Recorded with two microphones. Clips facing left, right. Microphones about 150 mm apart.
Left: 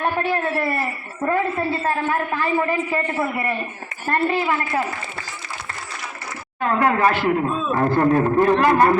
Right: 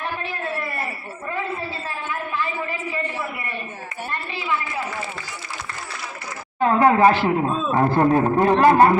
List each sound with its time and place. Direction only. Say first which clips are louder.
0.2 s a sound: left 7 dB; 65° left (ahead or behind)
1.8 s a man's voice: left 8 dB; 60° left (ahead or behind)
6.6 s speech: right 3 dB; 25° right (ahead or behind)